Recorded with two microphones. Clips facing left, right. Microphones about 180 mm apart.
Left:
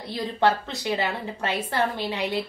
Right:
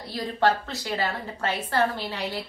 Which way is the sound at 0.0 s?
20° left (ahead or behind).